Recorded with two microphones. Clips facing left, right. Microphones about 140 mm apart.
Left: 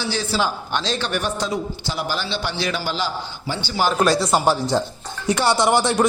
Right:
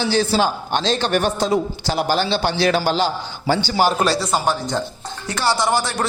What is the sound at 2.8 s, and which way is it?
Speech, 30° right (ahead or behind).